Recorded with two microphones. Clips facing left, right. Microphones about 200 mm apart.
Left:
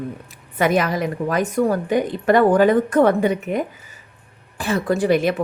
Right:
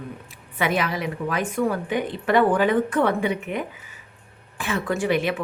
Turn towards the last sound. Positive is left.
turn(degrees=40)  # may be behind; listen again after turning